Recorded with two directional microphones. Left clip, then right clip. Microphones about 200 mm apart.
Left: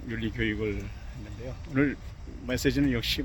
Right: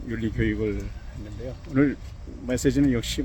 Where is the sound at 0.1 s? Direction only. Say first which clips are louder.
Right 3 dB; 20° right (ahead or behind).